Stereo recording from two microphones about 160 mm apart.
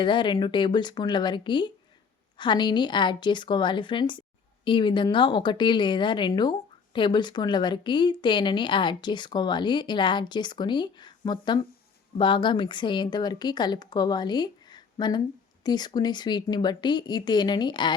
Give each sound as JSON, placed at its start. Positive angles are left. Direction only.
{"t": 0.0, "sound": "speech", "side_deg": 30}